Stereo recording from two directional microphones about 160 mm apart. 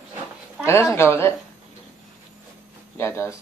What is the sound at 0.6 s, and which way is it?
Speech, 15° left (ahead or behind).